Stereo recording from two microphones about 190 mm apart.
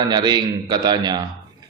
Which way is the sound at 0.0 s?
25° right (ahead or behind).